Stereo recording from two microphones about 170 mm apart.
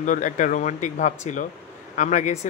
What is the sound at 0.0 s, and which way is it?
Speech, 50° left (ahead or behind).